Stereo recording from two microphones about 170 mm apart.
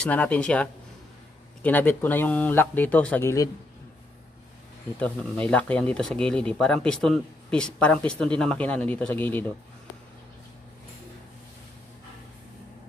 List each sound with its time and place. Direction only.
0.0 s speech: 10° left (ahead or behind)
4.9 s speech: 10° left (ahead or behind)